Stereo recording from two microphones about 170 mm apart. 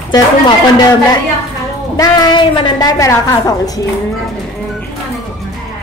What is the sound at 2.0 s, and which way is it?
A woman's voice, 25° left (ahead or behind).